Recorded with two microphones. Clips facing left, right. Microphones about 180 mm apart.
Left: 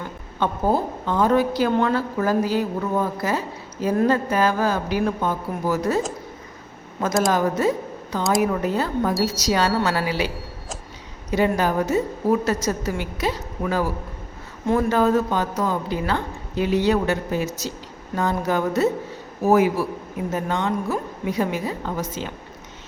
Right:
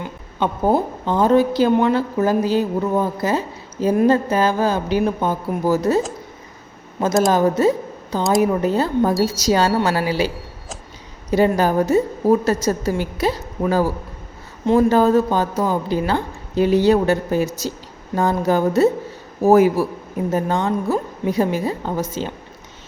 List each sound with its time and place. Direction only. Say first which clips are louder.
0.0 s a sound: right 2 dB; 15° right (ahead or behind)
1.0 s a woman's voice: right 4 dB; 30° right (ahead or behind)
7.3 s a woman's voice: right 5 dB; 30° right (ahead or behind)